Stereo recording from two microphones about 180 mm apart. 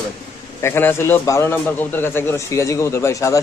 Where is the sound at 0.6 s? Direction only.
15° left (ahead or behind).